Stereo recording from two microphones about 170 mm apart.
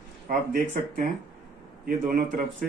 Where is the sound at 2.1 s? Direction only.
50° right (ahead or behind).